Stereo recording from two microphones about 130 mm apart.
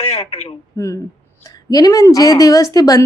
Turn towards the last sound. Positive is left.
turn(degrees=30)  # may be behind; listen again after turning